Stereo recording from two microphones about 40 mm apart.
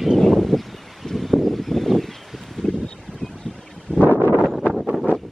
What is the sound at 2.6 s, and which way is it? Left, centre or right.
Boat, centre.